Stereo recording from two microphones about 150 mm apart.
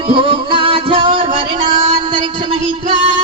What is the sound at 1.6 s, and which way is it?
Music, 55° right (ahead or behind).